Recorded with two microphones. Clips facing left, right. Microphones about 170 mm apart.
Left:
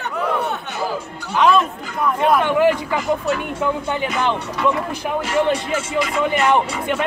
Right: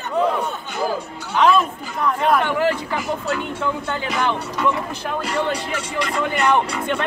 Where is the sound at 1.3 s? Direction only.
Centre (ahead or behind).